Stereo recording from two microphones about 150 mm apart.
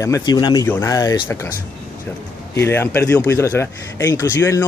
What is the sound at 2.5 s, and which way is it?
Speech, 15° left (ahead or behind).